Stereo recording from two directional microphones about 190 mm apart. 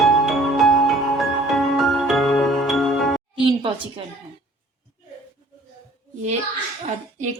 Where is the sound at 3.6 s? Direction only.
25° right (ahead or behind).